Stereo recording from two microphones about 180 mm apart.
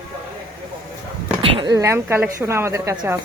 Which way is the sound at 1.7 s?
15° right (ahead or behind).